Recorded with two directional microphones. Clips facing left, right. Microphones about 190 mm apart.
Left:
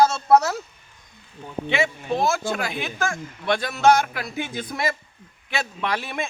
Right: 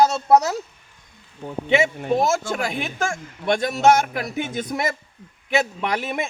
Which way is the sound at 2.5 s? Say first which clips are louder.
Right 1 dB; 25° right (ahead or behind).